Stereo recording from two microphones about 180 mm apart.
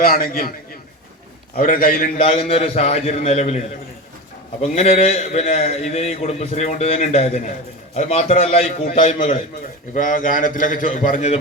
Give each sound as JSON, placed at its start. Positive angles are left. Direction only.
{"t": 0.0, "sound": "a man's voice", "side_deg": 55}
{"t": 2.2, "sound": "a man's voice", "side_deg": 30}
{"t": 4.6, "sound": "a man's voice", "side_deg": 40}